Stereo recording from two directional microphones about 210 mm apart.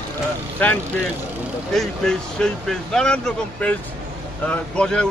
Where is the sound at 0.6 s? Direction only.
5° left (ahead or behind).